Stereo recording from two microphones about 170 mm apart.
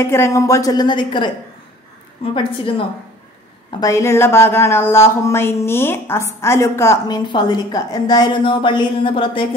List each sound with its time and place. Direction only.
0.0 s a woman's voice: 15° left (ahead or behind)
3.8 s speech: 15° left (ahead or behind); by 9.5 s 30° left (ahead or behind)